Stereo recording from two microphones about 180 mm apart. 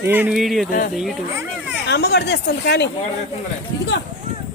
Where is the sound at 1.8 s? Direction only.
65° left (ahead or behind).